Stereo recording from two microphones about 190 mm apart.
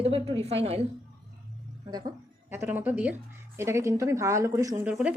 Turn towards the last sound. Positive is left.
turn(degrees=-5)  # may be behind; listen again after turning